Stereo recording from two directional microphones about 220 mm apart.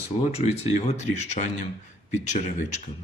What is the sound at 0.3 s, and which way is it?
Speech, 30° left (ahead or behind).